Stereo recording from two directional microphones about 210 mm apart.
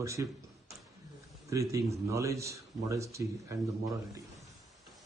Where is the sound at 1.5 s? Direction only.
15° right (ahead or behind).